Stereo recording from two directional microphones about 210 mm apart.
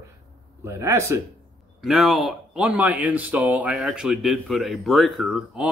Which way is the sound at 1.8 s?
Centre (ahead or behind).